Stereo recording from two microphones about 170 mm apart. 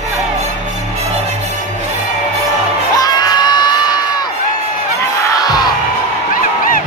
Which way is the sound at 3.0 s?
25° left (ahead or behind).